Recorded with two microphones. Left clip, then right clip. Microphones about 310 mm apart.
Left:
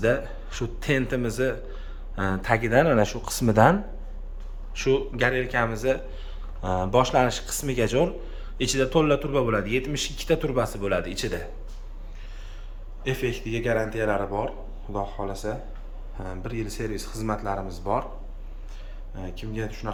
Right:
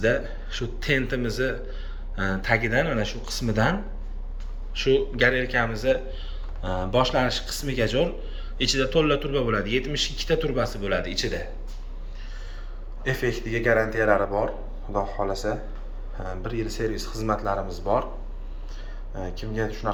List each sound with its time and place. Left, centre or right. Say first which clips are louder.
0.0 s speech: even; centre
13.1 s speech: right 2 dB; centre
19.1 s speech: right 4 dB; centre